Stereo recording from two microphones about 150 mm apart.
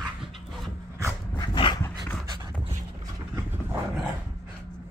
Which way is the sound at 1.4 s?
30° left (ahead or behind).